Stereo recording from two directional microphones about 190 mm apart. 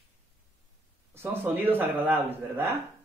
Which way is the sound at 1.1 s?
10° right (ahead or behind).